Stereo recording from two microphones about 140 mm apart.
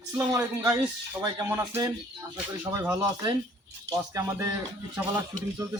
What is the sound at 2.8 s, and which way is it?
Speech, 20° right (ahead or behind).